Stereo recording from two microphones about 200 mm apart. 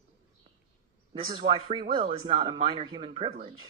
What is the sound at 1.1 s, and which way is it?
Speech, 25° right (ahead or behind).